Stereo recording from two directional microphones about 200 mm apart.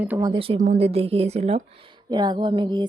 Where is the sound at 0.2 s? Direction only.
25° right (ahead or behind).